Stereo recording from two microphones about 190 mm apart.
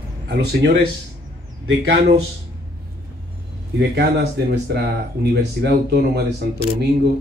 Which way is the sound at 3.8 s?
60° right (ahead or behind).